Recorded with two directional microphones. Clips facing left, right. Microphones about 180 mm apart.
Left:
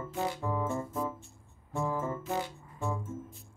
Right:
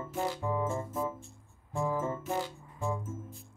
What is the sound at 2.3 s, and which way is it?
Music, centre (ahead or behind).